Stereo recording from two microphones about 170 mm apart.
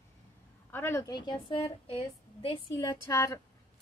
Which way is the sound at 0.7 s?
15° left (ahead or behind).